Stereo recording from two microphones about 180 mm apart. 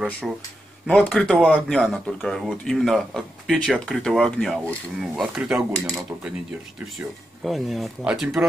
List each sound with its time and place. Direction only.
0.2 s speech: centre (ahead or behind)
7.4 s speech: centre (ahead or behind)